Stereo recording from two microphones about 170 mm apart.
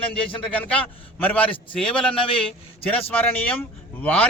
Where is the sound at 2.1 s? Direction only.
30° left (ahead or behind).